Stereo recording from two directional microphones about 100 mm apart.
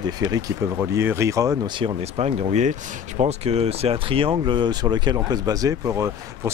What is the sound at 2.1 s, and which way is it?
Speech, 90° right.